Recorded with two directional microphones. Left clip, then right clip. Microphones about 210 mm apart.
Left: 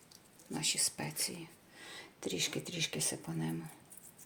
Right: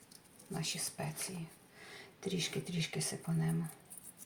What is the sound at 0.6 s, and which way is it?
Speech, 55° left (ahead or behind).